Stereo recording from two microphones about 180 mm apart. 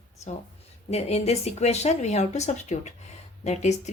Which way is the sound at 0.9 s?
35° left (ahead or behind).